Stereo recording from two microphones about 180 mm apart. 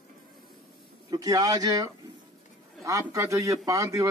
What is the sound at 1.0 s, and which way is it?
A man's voice, 20° right (ahead or behind).